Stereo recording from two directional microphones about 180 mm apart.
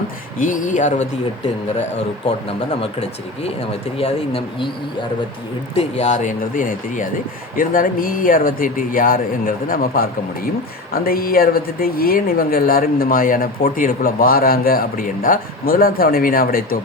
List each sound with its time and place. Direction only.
0.3 s speech: 45° left (ahead or behind)
2.2 s speech: 30° left (ahead or behind)
5.7 s speech: 40° left (ahead or behind)